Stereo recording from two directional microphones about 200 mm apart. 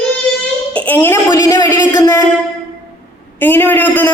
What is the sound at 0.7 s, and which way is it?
Speech, 5° left (ahead or behind).